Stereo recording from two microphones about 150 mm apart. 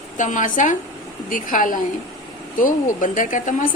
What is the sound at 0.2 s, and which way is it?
A woman's voice, 55° left (ahead or behind).